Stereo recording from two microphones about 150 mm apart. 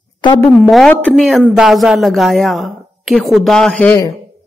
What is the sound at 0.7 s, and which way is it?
A woman's voice, 5° left (ahead or behind).